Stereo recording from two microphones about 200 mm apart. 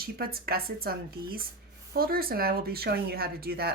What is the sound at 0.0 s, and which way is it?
Speech, 50° right (ahead or behind).